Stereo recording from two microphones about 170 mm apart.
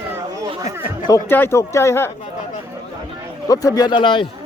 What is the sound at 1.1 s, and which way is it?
Speech, 15° left (ahead or behind).